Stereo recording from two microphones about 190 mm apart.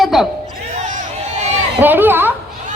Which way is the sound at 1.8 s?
10° right (ahead or behind).